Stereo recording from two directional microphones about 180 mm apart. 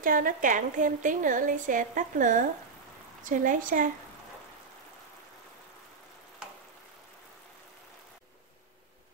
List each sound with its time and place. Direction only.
0.0 s a woman's voice: 50° right (ahead or behind)